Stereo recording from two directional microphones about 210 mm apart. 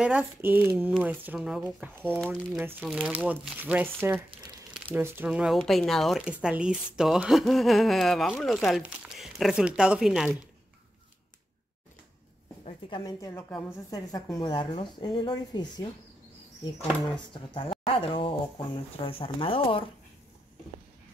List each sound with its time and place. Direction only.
0.0 s speech: 5° right (ahead or behind)
2.0 s speech: 5° left (ahead or behind)
2.6 s speech: 5° right (ahead or behind)
12.6 s a woman's voice: 20° left (ahead or behind)
17.3 s speech: 25° left (ahead or behind)